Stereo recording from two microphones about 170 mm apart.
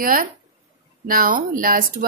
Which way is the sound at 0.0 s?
55° right (ahead or behind).